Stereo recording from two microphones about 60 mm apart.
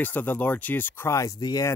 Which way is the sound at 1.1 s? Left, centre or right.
Left.